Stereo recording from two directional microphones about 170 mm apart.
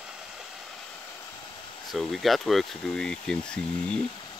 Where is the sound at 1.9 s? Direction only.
Centre (ahead or behind).